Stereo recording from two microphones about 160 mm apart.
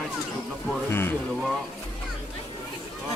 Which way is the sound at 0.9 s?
15° left (ahead or behind).